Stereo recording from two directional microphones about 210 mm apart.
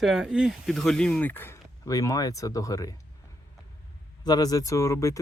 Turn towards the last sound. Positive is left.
turn(degrees=15)  # may be behind; listen again after turning